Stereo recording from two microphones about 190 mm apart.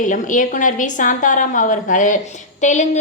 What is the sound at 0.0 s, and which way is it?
A woman's voice, 45° left (ahead or behind).